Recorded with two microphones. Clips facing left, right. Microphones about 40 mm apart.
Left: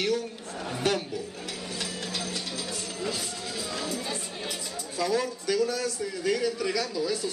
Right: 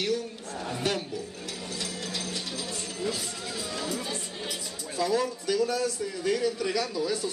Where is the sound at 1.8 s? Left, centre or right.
Left.